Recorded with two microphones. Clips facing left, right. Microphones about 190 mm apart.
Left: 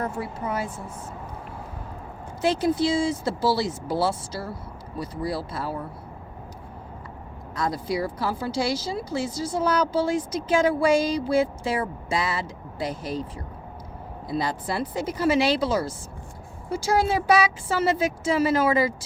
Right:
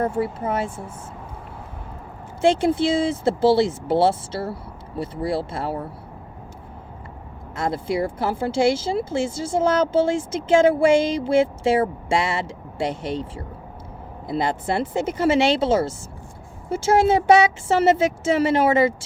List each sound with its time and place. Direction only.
0.0 s speech: 30° right (ahead or behind)
2.4 s speech: 25° right (ahead or behind)
7.5 s speech: 25° right (ahead or behind)